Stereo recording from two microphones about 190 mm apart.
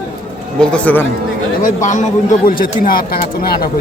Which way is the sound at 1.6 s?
40° left (ahead or behind).